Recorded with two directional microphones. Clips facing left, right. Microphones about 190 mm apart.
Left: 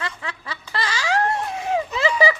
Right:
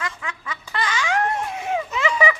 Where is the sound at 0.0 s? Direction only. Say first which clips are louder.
Even; 35° left (ahead or behind).